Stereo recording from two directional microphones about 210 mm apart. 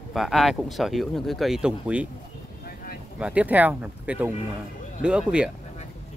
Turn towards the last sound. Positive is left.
turn(degrees=-5)  # may be behind; listen again after turning